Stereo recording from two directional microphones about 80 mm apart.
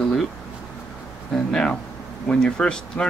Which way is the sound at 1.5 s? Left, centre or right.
Centre.